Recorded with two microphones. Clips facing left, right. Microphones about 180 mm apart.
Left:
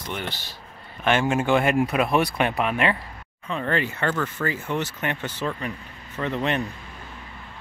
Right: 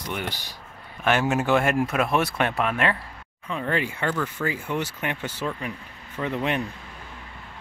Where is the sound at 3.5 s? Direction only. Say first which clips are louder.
Left 1 dB; 10° right (ahead or behind).